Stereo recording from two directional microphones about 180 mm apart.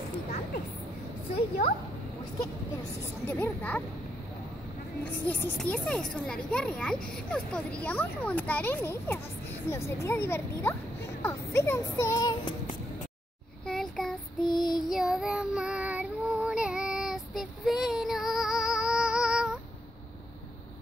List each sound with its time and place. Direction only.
3.3 s a child's voice: 10° left (ahead or behind)
5.2 s a child's voice: 10° left (ahead or behind)
13.7 s a sound: 5° left (ahead or behind)
14.7 s child singing: centre (ahead or behind)